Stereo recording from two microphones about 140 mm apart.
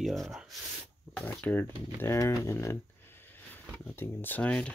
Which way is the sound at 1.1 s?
10° left (ahead or behind).